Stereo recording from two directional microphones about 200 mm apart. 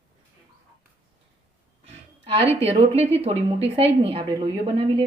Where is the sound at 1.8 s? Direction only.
25° right (ahead or behind).